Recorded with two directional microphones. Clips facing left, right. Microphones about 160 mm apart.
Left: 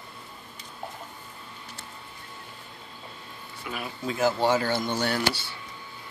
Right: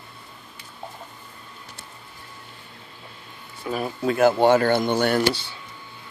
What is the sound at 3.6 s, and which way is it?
Speech, 40° right (ahead or behind).